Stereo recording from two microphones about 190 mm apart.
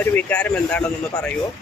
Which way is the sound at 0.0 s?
10° left (ahead or behind).